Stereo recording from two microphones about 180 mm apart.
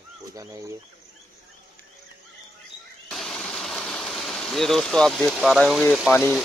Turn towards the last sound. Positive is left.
turn(degrees=5)  # may be behind; listen again after turning